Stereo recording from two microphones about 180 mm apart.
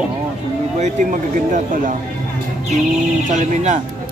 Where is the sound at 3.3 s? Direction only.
40° right (ahead or behind).